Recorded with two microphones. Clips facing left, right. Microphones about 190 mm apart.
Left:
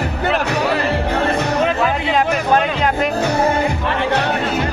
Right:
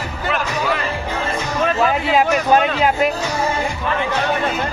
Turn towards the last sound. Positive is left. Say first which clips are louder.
# left 5 dB
turn(degrees=55)  # may be behind; listen again after turning